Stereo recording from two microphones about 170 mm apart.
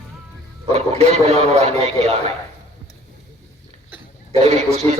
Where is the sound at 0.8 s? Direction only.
40° right (ahead or behind).